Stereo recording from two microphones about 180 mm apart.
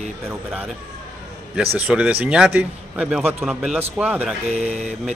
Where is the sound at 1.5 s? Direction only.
5° right (ahead or behind).